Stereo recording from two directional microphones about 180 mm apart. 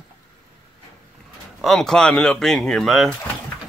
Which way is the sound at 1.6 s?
Centre (ahead or behind).